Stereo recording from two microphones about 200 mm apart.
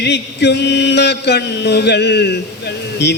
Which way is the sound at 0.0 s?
60° left (ahead or behind).